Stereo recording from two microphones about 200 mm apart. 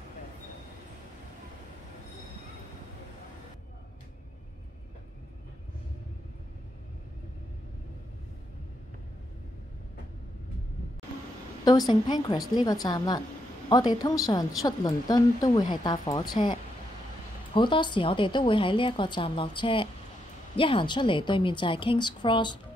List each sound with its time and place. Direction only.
11.6 s a woman's voice: 20° left (ahead or behind)
17.6 s a woman's voice: 25° left (ahead or behind)